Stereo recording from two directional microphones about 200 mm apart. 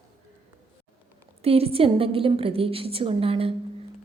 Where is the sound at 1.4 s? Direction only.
30° right (ahead or behind).